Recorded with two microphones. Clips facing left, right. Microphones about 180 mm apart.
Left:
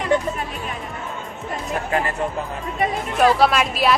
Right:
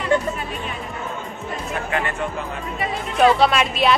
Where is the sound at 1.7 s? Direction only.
35° left (ahead or behind).